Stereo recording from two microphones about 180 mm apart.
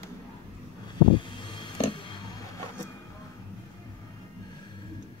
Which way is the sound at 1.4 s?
25° left (ahead or behind).